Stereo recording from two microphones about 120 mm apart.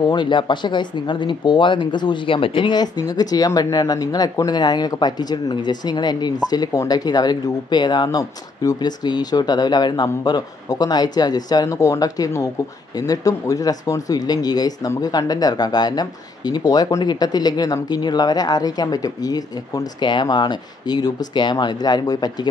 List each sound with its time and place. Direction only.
0.1 s speech: 40° left (ahead or behind)